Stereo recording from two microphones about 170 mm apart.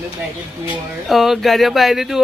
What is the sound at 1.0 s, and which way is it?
Speech, centre (ahead or behind).